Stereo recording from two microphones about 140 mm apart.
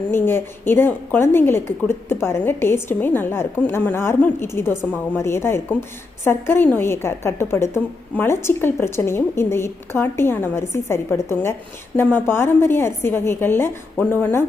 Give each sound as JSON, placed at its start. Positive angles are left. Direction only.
{"t": 0.1, "sound": "a woman's voice", "side_deg": 15}